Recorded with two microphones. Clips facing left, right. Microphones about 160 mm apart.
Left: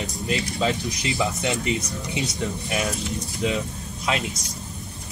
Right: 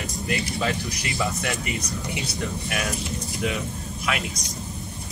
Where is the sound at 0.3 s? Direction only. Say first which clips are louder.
Left 2 dB; 20° left (ahead or behind).